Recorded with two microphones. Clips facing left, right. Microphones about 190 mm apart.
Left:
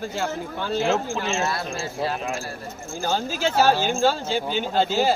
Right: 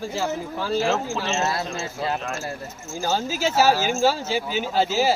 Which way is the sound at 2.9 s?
5° right (ahead or behind).